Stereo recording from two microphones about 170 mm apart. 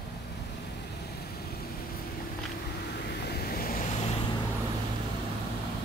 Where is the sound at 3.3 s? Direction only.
60° left (ahead or behind).